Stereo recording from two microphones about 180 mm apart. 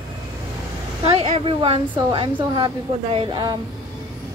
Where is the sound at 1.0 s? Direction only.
30° right (ahead or behind).